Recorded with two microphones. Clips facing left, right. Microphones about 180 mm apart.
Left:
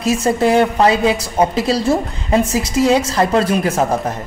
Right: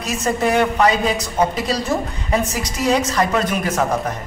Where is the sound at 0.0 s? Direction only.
30° left (ahead or behind).